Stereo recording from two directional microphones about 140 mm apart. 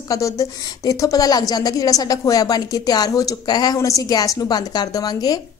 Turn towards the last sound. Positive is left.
turn(degrees=25)  # may be behind; listen again after turning